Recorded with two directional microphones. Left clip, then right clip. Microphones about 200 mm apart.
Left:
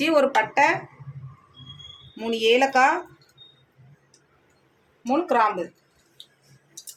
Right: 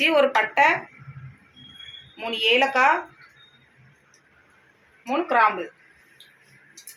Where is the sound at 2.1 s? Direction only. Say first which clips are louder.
Even; 60° left (ahead or behind).